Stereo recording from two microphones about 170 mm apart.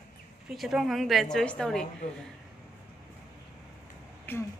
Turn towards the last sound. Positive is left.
turn(degrees=10)  # may be behind; listen again after turning